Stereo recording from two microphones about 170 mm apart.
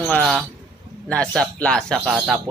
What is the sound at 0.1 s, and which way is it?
A man's voice, centre (ahead or behind).